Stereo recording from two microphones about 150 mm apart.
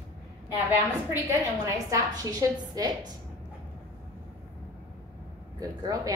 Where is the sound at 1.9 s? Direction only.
25° right (ahead or behind).